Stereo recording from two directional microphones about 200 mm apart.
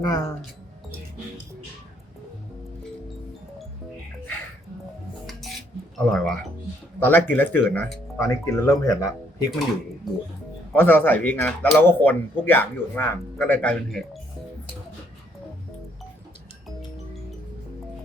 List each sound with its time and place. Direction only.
0.0 s speech: 20° left (ahead or behind)
6.0 s speech: centre (ahead or behind)
10.7 s speech: 10° left (ahead or behind)